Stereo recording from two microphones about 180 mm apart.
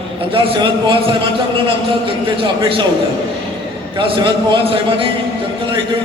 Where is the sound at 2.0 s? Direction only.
30° right (ahead or behind).